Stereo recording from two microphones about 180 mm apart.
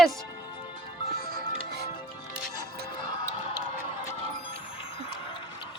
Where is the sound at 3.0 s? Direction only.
35° left (ahead or behind).